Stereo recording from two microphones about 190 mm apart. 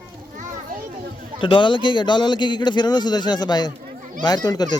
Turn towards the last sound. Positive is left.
turn(degrees=20)  # may be behind; listen again after turning